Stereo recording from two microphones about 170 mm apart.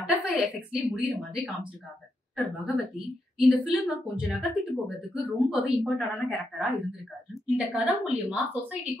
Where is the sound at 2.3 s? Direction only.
Centre (ahead or behind).